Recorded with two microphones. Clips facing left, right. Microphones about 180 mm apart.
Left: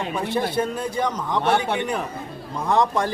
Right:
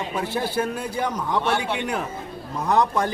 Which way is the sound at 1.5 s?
50° left (ahead or behind).